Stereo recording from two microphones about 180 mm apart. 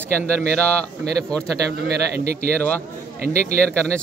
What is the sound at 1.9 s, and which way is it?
Speech, 60° right (ahead or behind).